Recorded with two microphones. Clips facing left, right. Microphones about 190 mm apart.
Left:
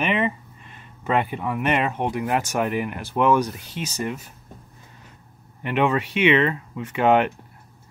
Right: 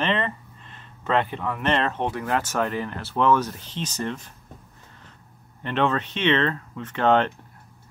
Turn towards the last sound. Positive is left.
turn(degrees=10)  # may be behind; listen again after turning